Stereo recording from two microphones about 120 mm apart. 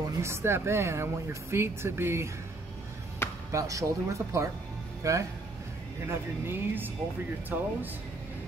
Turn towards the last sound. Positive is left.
turn(degrees=-15)  # may be behind; listen again after turning